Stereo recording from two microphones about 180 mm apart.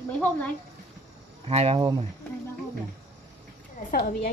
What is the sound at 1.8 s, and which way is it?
Speech, 20° right (ahead or behind).